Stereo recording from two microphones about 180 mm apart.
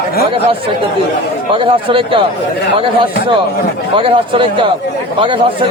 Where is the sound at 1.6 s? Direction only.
30° right (ahead or behind).